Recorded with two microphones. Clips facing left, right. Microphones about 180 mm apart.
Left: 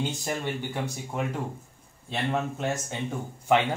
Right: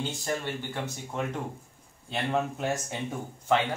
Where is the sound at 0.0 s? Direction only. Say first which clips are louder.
Left 2 dB; 15° left (ahead or behind).